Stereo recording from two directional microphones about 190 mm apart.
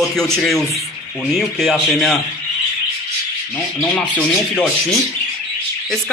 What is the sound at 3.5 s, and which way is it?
Speech, 5° left (ahead or behind).